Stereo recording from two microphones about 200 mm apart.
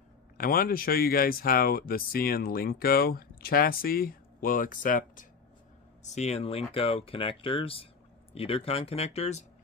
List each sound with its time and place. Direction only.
0.4 s speech: 45° left (ahead or behind); by 9.4 s 30° left (ahead or behind)